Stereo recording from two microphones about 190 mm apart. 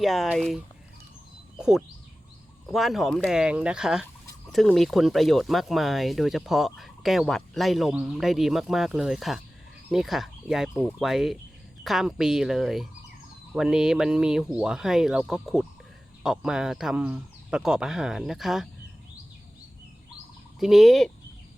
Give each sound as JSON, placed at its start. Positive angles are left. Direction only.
{"t": 0.0, "sound": "speech", "side_deg": 0}
{"t": 1.5, "sound": "a sound", "side_deg": -5}
{"t": 2.7, "sound": "speech", "side_deg": 0}
{"t": 20.6, "sound": "speech", "side_deg": 0}